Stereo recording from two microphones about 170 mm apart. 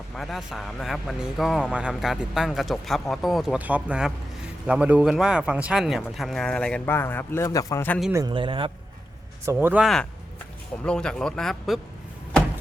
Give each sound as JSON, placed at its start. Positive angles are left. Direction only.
{"t": 0.2, "sound": "speech", "side_deg": 0}
{"t": 8.1, "sound": "a man's voice", "side_deg": -25}
{"t": 9.5, "sound": "speech", "side_deg": -10}
{"t": 9.8, "sound": "speech", "side_deg": 5}